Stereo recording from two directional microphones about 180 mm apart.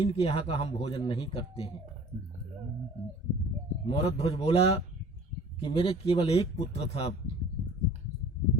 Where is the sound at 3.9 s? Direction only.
35° left (ahead or behind).